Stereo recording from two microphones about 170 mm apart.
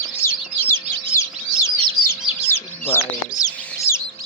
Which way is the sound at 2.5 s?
15° left (ahead or behind).